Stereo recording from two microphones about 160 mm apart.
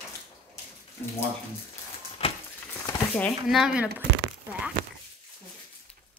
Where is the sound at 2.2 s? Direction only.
40° left (ahead or behind).